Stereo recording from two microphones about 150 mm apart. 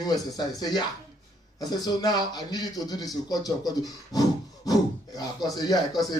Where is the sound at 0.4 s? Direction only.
25° left (ahead or behind).